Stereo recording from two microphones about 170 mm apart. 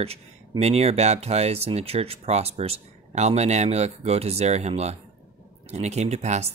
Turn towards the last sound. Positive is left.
turn(degrees=-40)  # may be behind; listen again after turning